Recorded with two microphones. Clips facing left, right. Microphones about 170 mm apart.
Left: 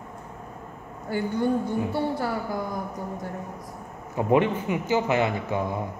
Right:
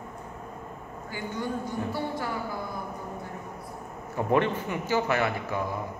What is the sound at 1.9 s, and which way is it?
Speech, 35° left (ahead or behind).